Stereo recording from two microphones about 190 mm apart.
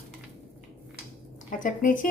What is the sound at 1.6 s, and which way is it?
Speech, 45° left (ahead or behind).